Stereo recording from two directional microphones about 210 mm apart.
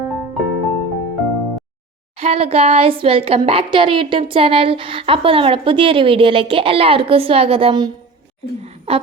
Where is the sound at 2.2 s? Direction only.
30° right (ahead or behind).